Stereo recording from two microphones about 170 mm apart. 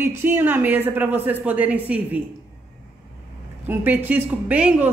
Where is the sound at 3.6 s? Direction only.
10° right (ahead or behind).